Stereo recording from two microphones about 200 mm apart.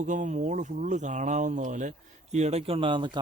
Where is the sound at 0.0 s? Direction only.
40° right (ahead or behind).